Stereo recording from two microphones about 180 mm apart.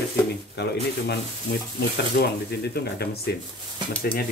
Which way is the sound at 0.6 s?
65° left (ahead or behind).